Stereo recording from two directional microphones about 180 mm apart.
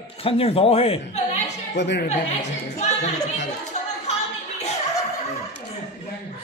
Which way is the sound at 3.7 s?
40° left (ahead or behind).